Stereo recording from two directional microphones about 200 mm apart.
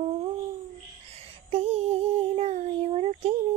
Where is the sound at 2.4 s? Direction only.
30° right (ahead or behind).